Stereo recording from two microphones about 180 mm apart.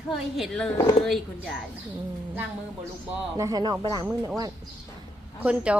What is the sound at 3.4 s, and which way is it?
Speech, 20° right (ahead or behind).